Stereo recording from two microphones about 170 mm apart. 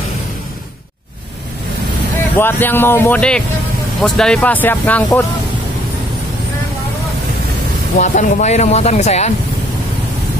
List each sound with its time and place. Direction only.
2.3 s speech: 10° left (ahead or behind)
8.0 s speech: 45° left (ahead or behind)